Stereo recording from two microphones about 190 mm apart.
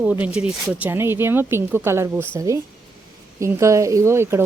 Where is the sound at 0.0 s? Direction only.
5° right (ahead or behind).